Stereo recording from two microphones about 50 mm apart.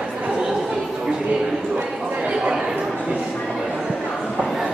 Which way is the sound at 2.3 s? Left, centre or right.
Centre.